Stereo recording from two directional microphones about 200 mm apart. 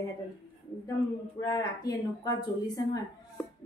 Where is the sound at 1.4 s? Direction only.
15° left (ahead or behind).